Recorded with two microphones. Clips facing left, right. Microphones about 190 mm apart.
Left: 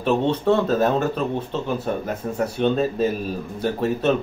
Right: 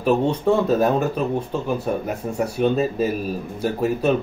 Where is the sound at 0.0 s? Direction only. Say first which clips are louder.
Right 1 dB; 10° right (ahead or behind).